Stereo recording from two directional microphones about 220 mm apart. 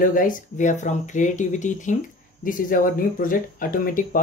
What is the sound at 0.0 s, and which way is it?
Speech, 40° left (ahead or behind).